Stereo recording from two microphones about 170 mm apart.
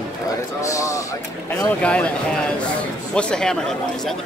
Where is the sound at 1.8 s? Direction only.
5° left (ahead or behind).